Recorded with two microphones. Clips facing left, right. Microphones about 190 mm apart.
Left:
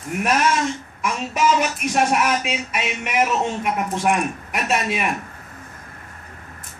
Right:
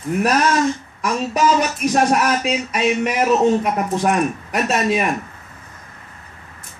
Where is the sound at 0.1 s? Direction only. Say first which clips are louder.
Right 3 dB; 35° right (ahead or behind).